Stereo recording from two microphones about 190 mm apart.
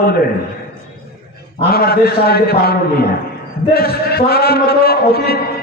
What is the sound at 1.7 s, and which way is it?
A man's voice, 55° left (ahead or behind).